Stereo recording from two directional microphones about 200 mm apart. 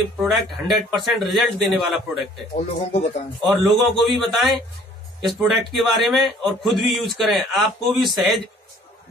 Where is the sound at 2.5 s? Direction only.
35° left (ahead or behind).